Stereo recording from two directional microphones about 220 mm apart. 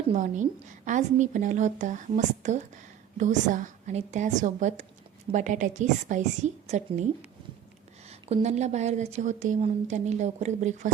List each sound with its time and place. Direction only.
0.1 s a woman's voice: 35° right (ahead or behind)
8.1 s a woman's voice: 30° right (ahead or behind)